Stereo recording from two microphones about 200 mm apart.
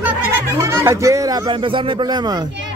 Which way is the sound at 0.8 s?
15° right (ahead or behind).